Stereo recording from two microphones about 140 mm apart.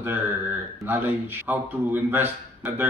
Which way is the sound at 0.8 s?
15° right (ahead or behind).